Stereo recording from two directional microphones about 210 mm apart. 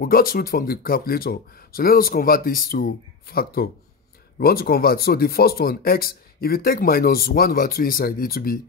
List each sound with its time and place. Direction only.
0.0 s speech: 45° left (ahead or behind)